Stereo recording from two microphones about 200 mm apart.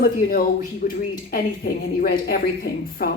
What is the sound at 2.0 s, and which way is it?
Speech, 50° left (ahead or behind).